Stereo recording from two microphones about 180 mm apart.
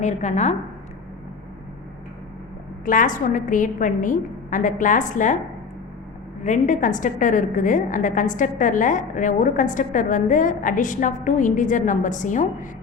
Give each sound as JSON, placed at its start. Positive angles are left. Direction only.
{"t": 0.0, "sound": "a woman's voice", "side_deg": 40}
{"t": 2.8, "sound": "a woman's voice", "side_deg": 50}
{"t": 6.4, "sound": "a woman's voice", "side_deg": 45}